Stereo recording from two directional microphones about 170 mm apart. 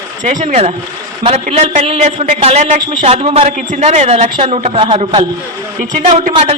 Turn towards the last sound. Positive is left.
turn(degrees=-40)  # may be behind; listen again after turning